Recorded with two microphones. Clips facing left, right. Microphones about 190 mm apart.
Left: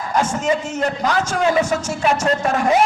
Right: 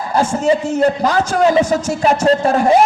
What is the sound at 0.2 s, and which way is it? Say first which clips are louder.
A man's voice: right 5 dB; 30° right (ahead or behind).